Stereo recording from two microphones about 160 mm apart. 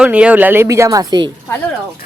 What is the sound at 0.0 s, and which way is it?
Speech, 10° right (ahead or behind).